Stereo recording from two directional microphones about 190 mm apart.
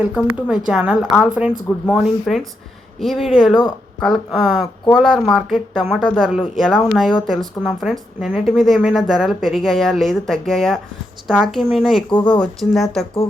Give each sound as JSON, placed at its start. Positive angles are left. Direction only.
{"t": 0.0, "sound": "a woman's voice", "side_deg": -5}
{"t": 3.5, "sound": "speech", "side_deg": 20}
{"t": 4.0, "sound": "a woman's voice", "side_deg": 0}